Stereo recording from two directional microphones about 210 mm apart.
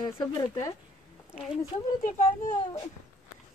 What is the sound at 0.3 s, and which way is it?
Speech, 20° left (ahead or behind).